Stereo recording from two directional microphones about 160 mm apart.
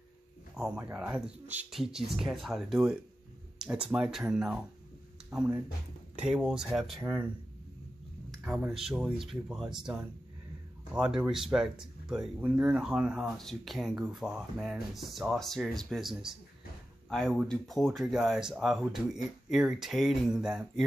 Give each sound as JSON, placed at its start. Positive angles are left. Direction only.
{"t": 0.6, "sound": "speech", "side_deg": -10}
{"t": 8.3, "sound": "speech", "side_deg": 0}
{"t": 17.5, "sound": "speech", "side_deg": 0}